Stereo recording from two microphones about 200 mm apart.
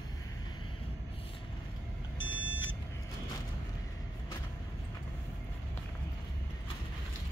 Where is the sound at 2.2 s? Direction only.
20° left (ahead or behind).